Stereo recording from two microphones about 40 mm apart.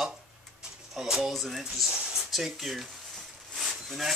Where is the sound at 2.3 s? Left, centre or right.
Centre.